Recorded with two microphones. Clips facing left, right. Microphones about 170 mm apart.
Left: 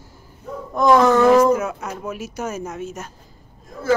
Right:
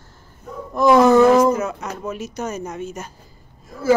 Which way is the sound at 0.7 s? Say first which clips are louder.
Right 2 dB; 5° right (ahead or behind).